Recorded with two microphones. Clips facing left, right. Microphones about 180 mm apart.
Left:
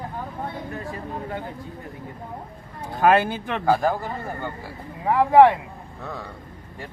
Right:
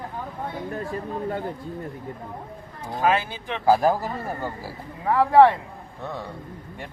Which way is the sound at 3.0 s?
55° left (ahead or behind).